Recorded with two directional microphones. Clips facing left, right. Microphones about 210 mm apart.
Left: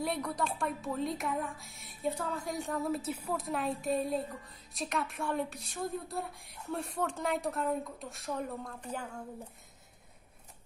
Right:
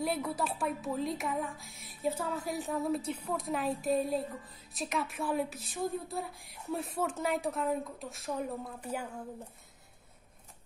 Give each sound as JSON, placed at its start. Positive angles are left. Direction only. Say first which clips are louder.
{"t": 0.0, "sound": "a woman's voice", "louder": "right 1 dB", "side_deg": -5}